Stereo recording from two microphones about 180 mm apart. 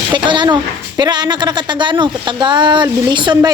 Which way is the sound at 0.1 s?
25° right (ahead or behind).